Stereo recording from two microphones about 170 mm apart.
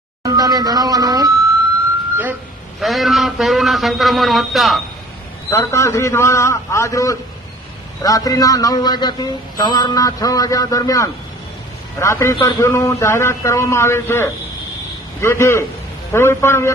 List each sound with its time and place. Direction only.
0.2 s speech: 20° right (ahead or behind)
2.8 s a man's voice: centre (ahead or behind)
5.5 s a man's voice: 15° left (ahead or behind)